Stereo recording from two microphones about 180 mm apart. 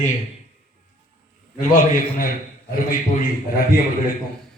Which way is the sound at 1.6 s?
45° left (ahead or behind).